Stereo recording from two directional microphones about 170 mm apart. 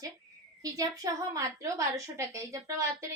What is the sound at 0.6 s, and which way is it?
A woman's voice, 20° right (ahead or behind).